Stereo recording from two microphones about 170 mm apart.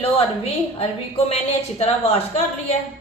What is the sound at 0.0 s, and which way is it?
A woman's voice, 35° left (ahead or behind).